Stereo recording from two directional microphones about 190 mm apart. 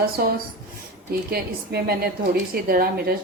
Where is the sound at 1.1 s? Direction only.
55° right (ahead or behind).